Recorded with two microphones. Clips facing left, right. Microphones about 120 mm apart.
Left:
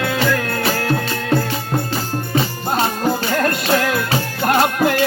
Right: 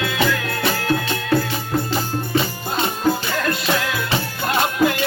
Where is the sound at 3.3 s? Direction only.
50° left (ahead or behind).